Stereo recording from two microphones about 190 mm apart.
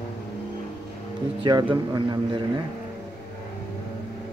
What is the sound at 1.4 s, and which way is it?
Speech, 25° right (ahead or behind).